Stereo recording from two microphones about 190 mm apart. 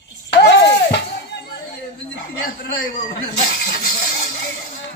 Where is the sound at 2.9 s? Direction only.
50° left (ahead or behind).